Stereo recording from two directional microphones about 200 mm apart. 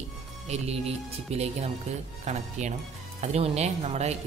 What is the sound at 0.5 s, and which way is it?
Speech, 30° right (ahead or behind).